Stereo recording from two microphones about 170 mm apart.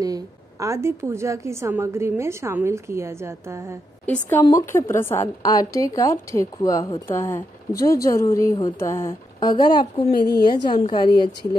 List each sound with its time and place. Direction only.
0.0 s a woman's voice: 20° right (ahead or behind)
4.0 s a woman's voice: 10° left (ahead or behind)